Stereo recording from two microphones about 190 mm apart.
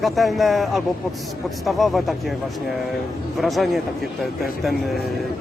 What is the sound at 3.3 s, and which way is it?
Speech, centre (ahead or behind).